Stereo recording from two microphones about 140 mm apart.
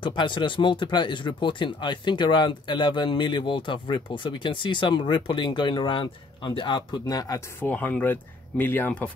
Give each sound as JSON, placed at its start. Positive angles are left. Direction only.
{"t": 0.0, "sound": "speech", "side_deg": 35}